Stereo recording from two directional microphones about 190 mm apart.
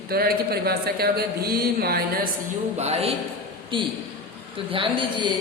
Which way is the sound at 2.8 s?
35° right (ahead or behind).